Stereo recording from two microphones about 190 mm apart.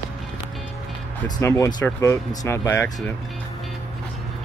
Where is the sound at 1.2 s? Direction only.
15° left (ahead or behind).